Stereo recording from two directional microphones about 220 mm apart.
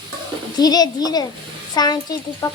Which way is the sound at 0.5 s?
15° left (ahead or behind).